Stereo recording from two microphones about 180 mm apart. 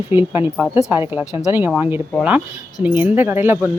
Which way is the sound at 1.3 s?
20° left (ahead or behind).